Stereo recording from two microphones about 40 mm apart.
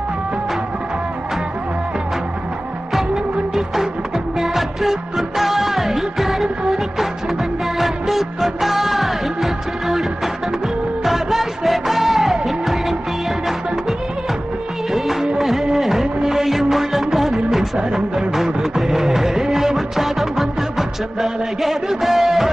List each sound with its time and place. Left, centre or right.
4.4 s music: centre
7.8 s music: centre
14.9 s music of bollywood: centre
17.7 s a sound: centre
18.3 s music: centre